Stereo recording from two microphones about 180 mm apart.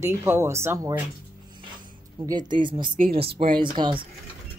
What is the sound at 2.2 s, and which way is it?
A woman's voice, 25° right (ahead or behind).